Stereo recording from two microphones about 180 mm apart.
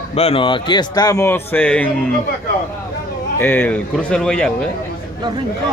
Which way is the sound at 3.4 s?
10° left (ahead or behind).